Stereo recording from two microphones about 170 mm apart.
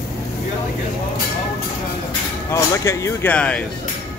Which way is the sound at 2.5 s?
15° left (ahead or behind).